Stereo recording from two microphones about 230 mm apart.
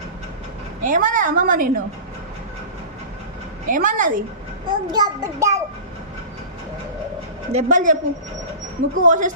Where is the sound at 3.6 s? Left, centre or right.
Right.